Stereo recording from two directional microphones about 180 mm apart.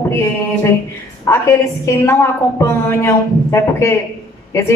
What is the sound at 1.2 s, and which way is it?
A woman's voice, 15° left (ahead or behind).